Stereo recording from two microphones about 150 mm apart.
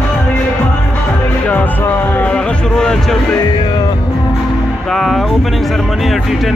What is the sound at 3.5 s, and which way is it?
Music, 35° left (ahead or behind).